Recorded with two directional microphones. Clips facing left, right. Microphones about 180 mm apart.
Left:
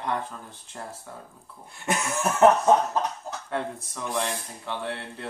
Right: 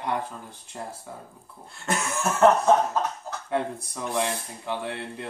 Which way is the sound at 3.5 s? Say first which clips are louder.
Right 4 dB; 15° right (ahead or behind).